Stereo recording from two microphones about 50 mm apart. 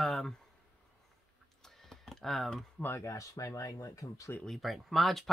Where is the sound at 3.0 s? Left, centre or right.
Left.